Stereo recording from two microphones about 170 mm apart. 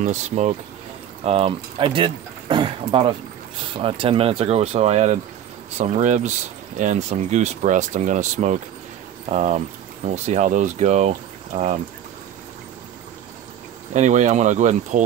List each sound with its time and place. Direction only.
0.0 s speech: 45° right (ahead or behind)
13.9 s speech: 45° right (ahead or behind)